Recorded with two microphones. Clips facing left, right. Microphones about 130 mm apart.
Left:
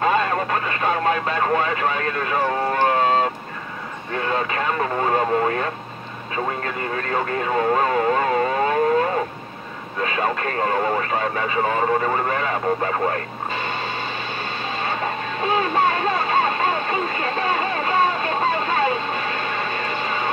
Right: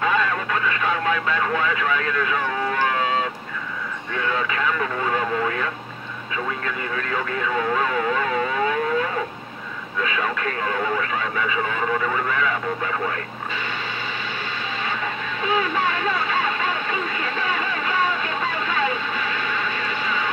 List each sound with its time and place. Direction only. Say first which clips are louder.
0.0 s radio: left 3 dB; 40° left (ahead or behind)
4.1 s speech: left 2 dB; 40° left (ahead or behind)
7.0 s speech: left 3 dB; 40° left (ahead or behind)
15.4 s a sound: left 3 dB; 40° left (ahead or behind)